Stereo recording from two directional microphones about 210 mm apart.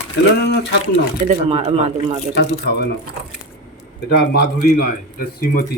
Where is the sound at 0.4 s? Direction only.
55° left (ahead or behind).